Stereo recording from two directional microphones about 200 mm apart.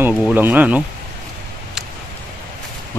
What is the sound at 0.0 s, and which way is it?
Speech, 10° right (ahead or behind).